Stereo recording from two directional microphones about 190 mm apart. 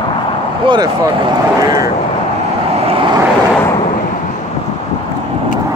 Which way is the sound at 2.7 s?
30° right (ahead or behind).